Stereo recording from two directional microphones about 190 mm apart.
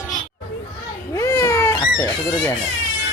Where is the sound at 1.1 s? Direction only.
15° left (ahead or behind).